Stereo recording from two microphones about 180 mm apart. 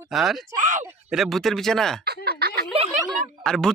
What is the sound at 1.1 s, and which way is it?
Speech, centre (ahead or behind).